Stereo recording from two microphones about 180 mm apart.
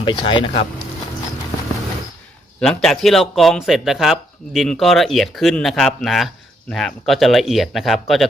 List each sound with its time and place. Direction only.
0.0 s speech: 25° left (ahead or behind)
2.6 s speech: 5° left (ahead or behind)